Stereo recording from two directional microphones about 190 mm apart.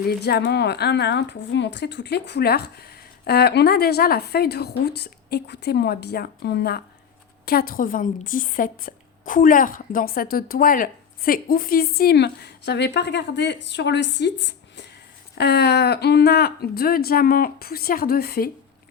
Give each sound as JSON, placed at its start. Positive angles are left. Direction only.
{"t": 0.0, "sound": "a woman's voice", "side_deg": 55}